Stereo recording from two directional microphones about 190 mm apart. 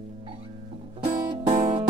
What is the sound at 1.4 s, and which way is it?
Music, 30° right (ahead or behind).